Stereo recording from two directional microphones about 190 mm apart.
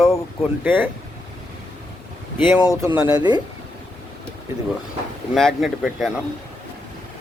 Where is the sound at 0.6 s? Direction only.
10° right (ahead or behind).